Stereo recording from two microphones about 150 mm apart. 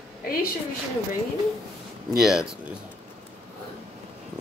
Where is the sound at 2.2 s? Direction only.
Centre (ahead or behind).